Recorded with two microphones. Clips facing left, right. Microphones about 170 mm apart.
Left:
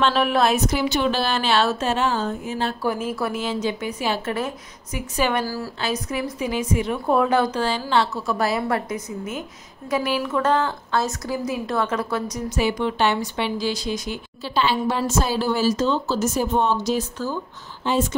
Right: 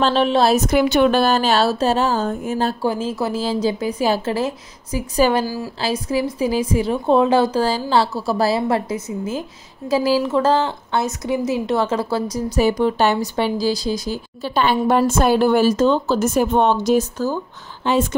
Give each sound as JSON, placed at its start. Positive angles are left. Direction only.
{"t": 0.0, "sound": "a woman's voice", "side_deg": -30}
{"t": 0.7, "sound": "a woman's voice", "side_deg": -55}
{"t": 2.8, "sound": "a woman's voice", "side_deg": -30}
{"t": 14.5, "sound": "a woman's voice", "side_deg": -50}
{"t": 17.8, "sound": "a woman's voice", "side_deg": -60}